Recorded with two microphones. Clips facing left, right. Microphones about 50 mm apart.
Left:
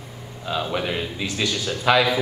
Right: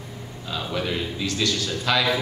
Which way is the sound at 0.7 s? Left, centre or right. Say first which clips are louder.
Left 1 dB; centre.